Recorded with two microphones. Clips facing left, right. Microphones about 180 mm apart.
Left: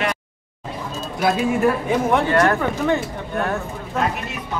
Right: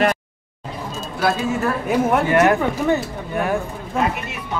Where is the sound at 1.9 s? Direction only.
10° right (ahead or behind).